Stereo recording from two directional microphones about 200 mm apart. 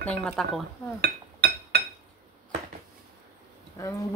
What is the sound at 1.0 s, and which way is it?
Chink, 50° right (ahead or behind).